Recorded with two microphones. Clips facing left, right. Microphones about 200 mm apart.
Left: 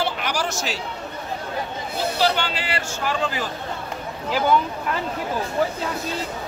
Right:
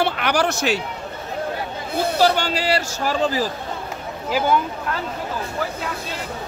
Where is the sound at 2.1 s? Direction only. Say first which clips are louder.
Right 4 dB; 45° right (ahead or behind).